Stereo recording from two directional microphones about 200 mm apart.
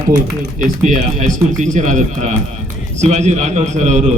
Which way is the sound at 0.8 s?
40° right (ahead or behind).